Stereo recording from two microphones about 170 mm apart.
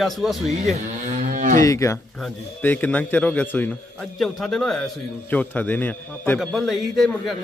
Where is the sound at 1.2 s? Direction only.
50° right (ahead or behind).